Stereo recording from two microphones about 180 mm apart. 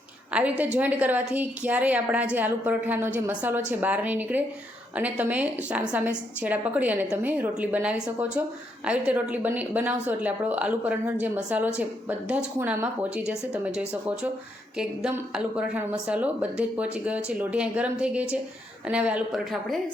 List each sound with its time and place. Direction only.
0.3 s a woman's voice: 10° right (ahead or behind)